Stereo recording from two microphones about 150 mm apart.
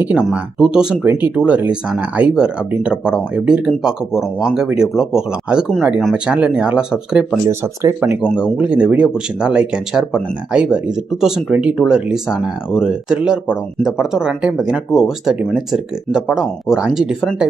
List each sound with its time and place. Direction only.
0.0 s speech: 10° right (ahead or behind)
7.8 s speech: 20° right (ahead or behind)
8.2 s speech: 5° right (ahead or behind)